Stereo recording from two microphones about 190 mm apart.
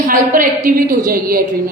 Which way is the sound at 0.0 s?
45° right (ahead or behind).